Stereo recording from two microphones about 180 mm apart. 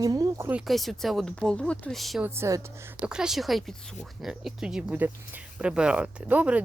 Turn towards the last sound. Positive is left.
turn(degrees=-10)  # may be behind; listen again after turning